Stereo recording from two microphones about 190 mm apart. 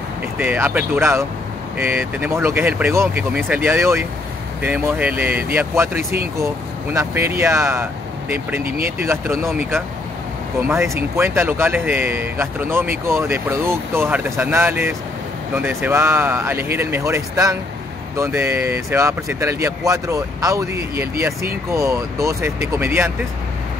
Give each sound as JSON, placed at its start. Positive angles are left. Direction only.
{"t": 0.4, "sound": "speech", "side_deg": -10}
{"t": 8.6, "sound": "speech", "side_deg": -50}
{"t": 8.9, "sound": "speech", "side_deg": -15}